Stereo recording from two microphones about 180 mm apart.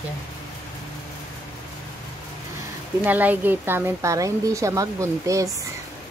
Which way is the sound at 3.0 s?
10° right (ahead or behind).